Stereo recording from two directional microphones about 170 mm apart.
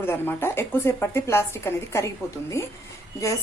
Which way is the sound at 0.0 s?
15° left (ahead or behind).